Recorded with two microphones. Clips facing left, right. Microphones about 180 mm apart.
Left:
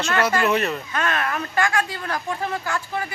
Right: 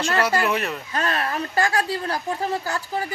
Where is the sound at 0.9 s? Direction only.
35° right (ahead or behind).